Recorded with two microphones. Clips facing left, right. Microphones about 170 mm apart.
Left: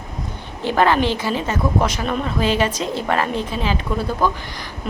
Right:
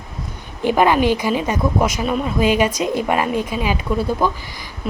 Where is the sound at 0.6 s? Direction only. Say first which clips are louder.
Right 2 dB; 15° right (ahead or behind).